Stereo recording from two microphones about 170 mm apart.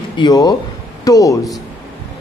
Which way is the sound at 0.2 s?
25° left (ahead or behind).